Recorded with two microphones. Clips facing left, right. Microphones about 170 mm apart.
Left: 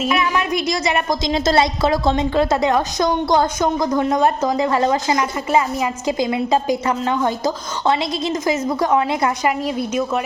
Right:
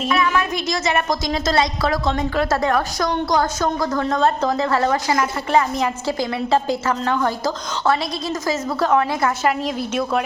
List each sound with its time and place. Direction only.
0.2 s a woman's voice: 15° left (ahead or behind)
1.3 s a woman's voice: 30° left (ahead or behind)
5.5 s a woman's voice: 10° left (ahead or behind)